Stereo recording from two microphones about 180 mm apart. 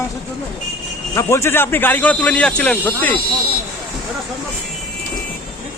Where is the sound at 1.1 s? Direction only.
15° left (ahead or behind).